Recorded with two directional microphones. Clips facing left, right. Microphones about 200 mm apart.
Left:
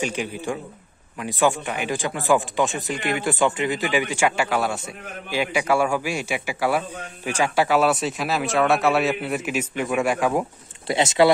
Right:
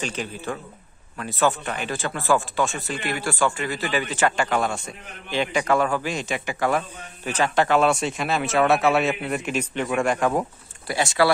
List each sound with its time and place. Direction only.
0.0 s speech: 15° left (ahead or behind)
10.9 s speech: 20° left (ahead or behind)